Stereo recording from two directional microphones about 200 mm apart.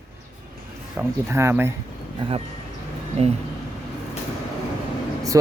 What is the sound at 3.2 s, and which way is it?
Speech, 30° right (ahead or behind).